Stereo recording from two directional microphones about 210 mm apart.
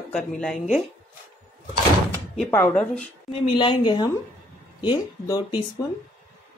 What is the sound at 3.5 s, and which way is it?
Speech, 25° left (ahead or behind).